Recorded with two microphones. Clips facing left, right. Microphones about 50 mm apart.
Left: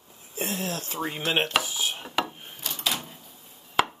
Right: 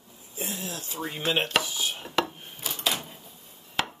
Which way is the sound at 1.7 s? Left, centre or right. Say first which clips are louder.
Even; centre.